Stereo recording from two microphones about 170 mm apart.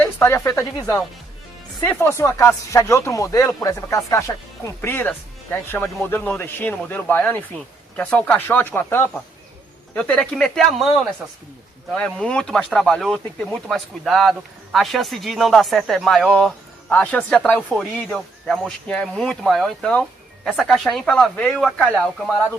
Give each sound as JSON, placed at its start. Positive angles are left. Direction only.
{"t": 0.0, "sound": "speech", "side_deg": 15}
{"t": 11.9, "sound": "speech", "side_deg": 5}